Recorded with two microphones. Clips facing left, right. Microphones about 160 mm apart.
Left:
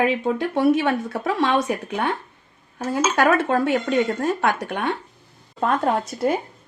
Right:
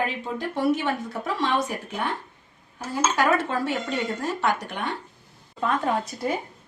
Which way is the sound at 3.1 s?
55° left (ahead or behind).